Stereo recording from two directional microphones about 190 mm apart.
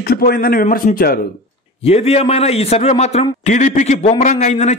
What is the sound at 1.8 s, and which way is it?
A man's voice, 35° left (ahead or behind).